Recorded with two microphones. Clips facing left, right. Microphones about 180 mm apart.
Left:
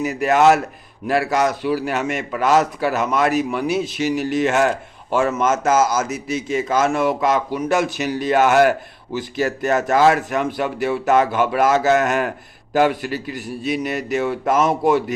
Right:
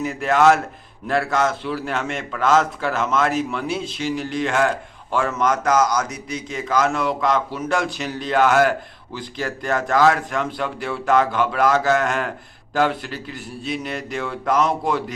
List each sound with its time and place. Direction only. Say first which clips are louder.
0.0 s a man's voice: left 2 dB; 15° left (ahead or behind)